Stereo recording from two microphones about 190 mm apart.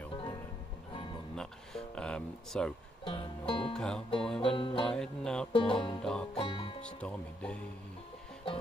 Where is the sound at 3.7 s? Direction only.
5° left (ahead or behind).